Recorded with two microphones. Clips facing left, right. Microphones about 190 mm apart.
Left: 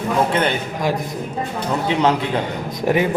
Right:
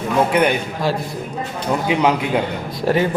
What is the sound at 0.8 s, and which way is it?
Speech, 15° left (ahead or behind).